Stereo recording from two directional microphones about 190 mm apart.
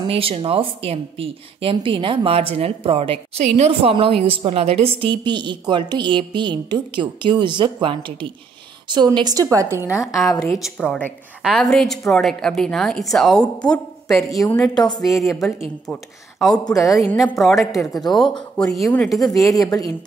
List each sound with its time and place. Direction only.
0.1 s speech: 30° right (ahead or behind)
10.4 s a woman's voice: centre (ahead or behind)
14.3 s speech: 20° left (ahead or behind)
15.9 s speech: 5° left (ahead or behind)
16.6 s speech: 15° left (ahead or behind)
17.4 s a woman's voice: centre (ahead or behind)
19.1 s speech: 20° left (ahead or behind)